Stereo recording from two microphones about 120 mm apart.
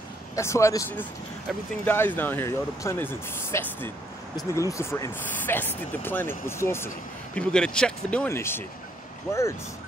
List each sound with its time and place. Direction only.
0.4 s speech: 25° left (ahead or behind)
7.3 s speech: 5° left (ahead or behind)
8.3 s speech: 20° left (ahead or behind)